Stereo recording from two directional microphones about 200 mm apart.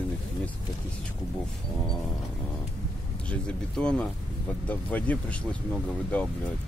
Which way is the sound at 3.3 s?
5° left (ahead or behind).